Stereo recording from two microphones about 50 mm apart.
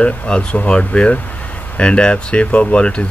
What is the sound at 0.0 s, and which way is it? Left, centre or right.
Speech, left.